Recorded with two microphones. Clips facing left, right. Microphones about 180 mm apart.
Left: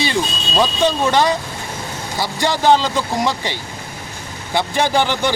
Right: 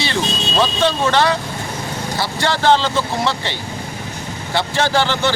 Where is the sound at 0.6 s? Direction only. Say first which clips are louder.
Left 1 dB; 15° left (ahead or behind).